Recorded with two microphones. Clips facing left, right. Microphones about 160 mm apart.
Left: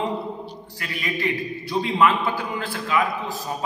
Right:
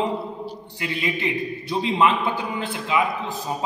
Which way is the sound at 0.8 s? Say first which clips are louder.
Right 2 dB; 20° right (ahead or behind).